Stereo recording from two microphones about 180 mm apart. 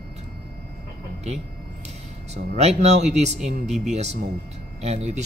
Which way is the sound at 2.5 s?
40° right (ahead or behind).